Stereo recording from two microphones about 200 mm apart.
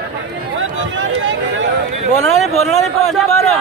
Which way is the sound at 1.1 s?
70° right (ahead or behind).